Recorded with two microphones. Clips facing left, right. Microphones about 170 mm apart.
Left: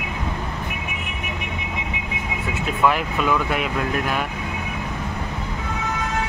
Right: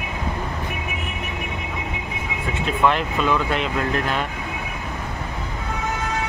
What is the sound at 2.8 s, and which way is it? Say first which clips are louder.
Speech: even; 5° left (ahead or behind).